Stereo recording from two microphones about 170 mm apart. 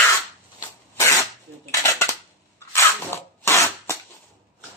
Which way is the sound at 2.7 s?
15° left (ahead or behind).